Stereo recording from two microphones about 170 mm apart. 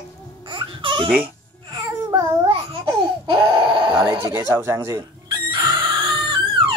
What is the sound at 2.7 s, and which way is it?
Baby cry, 30° right (ahead or behind).